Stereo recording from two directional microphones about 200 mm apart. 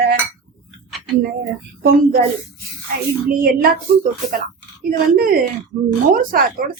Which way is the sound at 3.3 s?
45° right (ahead or behind).